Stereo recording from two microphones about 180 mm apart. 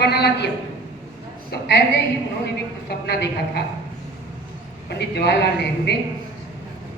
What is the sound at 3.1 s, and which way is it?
Speech, 65° left (ahead or behind).